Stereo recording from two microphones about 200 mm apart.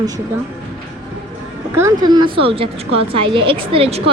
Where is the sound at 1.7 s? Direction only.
15° right (ahead or behind).